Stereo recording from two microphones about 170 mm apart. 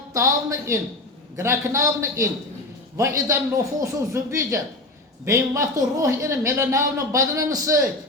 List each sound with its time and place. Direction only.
0.1 s speech: 15° right (ahead or behind)